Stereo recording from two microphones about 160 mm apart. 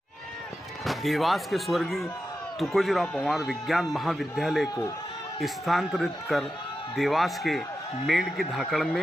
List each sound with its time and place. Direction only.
0.8 s speech: centre (ahead or behind)